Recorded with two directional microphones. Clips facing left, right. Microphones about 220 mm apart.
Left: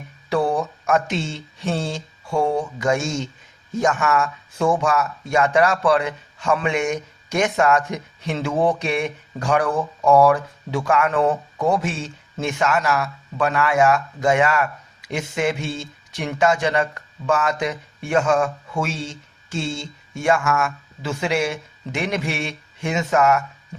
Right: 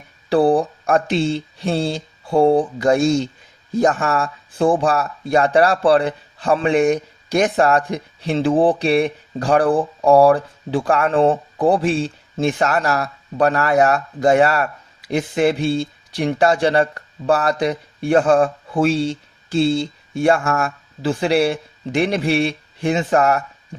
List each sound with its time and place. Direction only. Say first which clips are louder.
0.3 s speech: right 6 dB; 35° right (ahead or behind)